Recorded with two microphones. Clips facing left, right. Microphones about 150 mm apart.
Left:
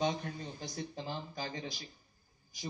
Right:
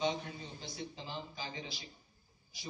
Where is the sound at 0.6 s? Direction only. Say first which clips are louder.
Left 3 dB; 45° left (ahead or behind).